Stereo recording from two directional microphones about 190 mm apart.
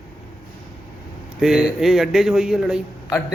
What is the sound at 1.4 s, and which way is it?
Speech, 5° right (ahead or behind).